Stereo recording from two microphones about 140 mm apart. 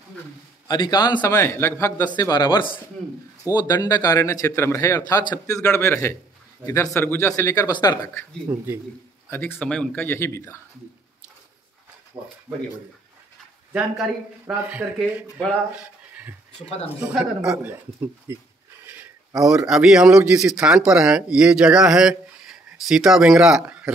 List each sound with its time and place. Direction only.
0.7 s a man's voice: 30° left (ahead or behind)
1.3 s speech: 15° left (ahead or behind)
2.0 s a man's voice: 30° left (ahead or behind)
8.5 s speech: 15° right (ahead or behind)
9.3 s speech: 15° left (ahead or behind)
14.7 s speech: 10° right (ahead or behind)
15.7 s a sound: 10° right (ahead or behind)
16.6 s speech: 45° left (ahead or behind)
17.0 s speech: 5° right (ahead or behind)
18.3 s speech: 15° right (ahead or behind)
19.4 s speech: 5° right (ahead or behind)